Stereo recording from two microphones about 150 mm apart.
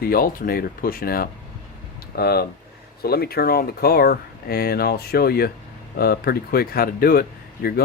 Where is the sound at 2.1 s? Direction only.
90° left.